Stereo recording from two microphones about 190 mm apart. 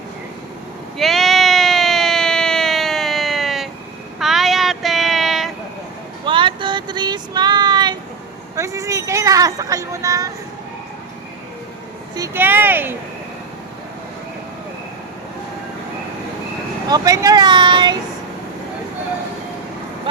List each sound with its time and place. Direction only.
0.9 s a sound: centre (ahead or behind)
4.2 s child singing: centre (ahead or behind)
6.2 s child singing: 25° right (ahead or behind)
8.5 s a sound: 15° right (ahead or behind)
12.1 s speech: 15° right (ahead or behind)
16.9 s speech: 20° right (ahead or behind)